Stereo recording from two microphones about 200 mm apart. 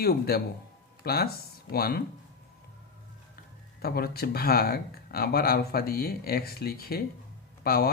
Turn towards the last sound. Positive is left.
turn(degrees=50)  # may be behind; listen again after turning